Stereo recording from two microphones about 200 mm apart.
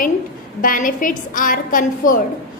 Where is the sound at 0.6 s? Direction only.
45° left (ahead or behind).